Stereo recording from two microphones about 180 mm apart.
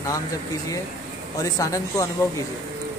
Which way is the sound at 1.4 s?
20° left (ahead or behind).